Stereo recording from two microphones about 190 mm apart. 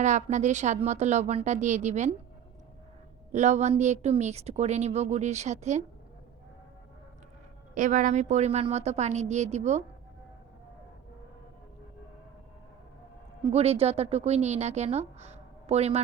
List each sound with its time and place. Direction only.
0.0 s a woman's voice: 40° right (ahead or behind)
3.3 s a woman's voice: 35° right (ahead or behind)
7.8 s a woman's voice: 40° right (ahead or behind)
13.5 s a woman's voice: 35° right (ahead or behind)